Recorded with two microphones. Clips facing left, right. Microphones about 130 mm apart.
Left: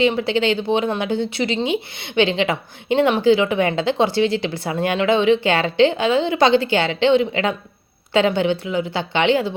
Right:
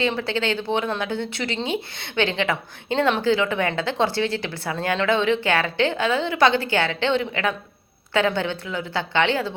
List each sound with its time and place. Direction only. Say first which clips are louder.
0.0 s speech: left 6 dB; 15° left (ahead or behind)